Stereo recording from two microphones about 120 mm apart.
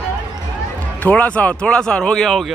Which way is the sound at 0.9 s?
15° left (ahead or behind).